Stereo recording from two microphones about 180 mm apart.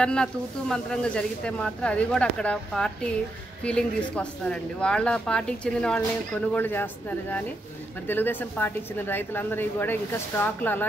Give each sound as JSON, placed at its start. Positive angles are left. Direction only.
{"t": 0.0, "sound": "speech", "side_deg": 5}